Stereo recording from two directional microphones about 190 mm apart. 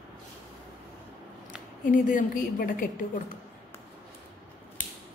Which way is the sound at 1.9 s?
45° left (ahead or behind).